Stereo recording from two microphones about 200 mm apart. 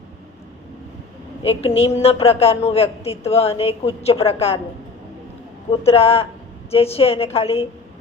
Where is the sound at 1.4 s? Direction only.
30° left (ahead or behind).